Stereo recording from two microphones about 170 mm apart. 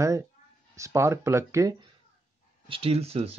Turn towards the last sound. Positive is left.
turn(degrees=-35)  # may be behind; listen again after turning